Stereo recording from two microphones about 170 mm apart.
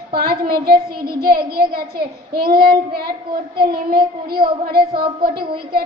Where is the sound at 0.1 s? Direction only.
65° right (ahead or behind).